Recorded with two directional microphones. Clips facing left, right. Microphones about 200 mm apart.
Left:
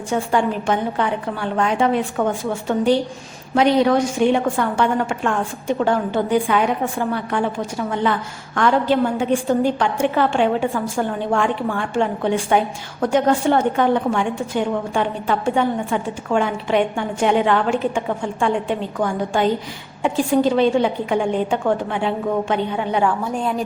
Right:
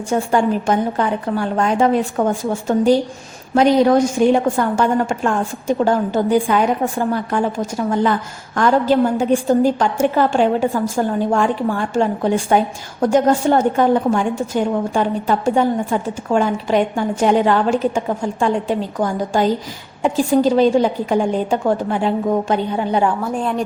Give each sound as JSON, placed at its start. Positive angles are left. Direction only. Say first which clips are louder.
{"t": 0.1, "sound": "a woman's voice", "louder": "right 3 dB", "side_deg": -40}
{"t": 8.5, "sound": "a woman's voice", "louder": "right 3 dB", "side_deg": -40}
{"t": 13.7, "sound": "a woman's voice", "louder": "right 3 dB", "side_deg": -40}
{"t": 23.2, "sound": "a woman's voice", "louder": "right 2 dB", "side_deg": 0}